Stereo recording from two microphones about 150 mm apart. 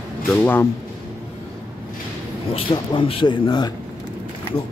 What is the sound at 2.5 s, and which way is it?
Speech, 35° left (ahead or behind).